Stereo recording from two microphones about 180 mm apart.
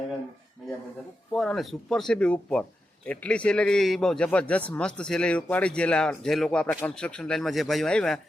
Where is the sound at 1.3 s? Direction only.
Centre (ahead or behind).